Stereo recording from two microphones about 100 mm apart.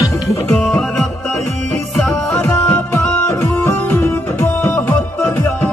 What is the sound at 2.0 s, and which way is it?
Music, 5° left (ahead or behind).